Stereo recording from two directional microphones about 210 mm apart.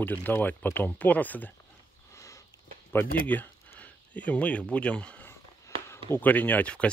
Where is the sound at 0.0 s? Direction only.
10° left (ahead or behind).